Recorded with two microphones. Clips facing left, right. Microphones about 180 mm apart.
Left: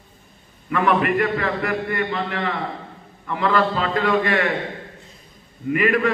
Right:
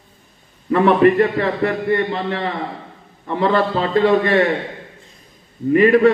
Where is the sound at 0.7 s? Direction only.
35° right (ahead or behind).